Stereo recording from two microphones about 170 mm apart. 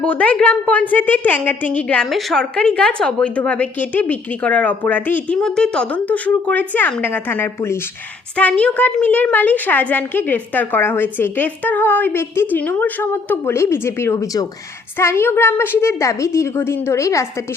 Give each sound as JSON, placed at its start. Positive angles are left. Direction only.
{"t": 0.0, "sound": "a woman's voice", "side_deg": 5}